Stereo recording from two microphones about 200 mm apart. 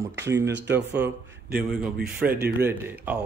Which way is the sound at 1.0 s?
10° right (ahead or behind).